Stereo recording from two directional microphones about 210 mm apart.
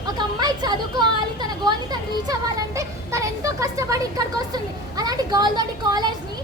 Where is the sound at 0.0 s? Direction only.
20° right (ahead or behind).